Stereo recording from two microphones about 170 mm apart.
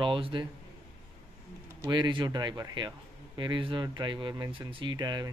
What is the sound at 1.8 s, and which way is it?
Speech, 25° right (ahead or behind).